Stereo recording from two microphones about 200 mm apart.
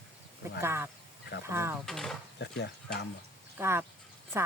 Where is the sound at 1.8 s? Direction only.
Centre (ahead or behind).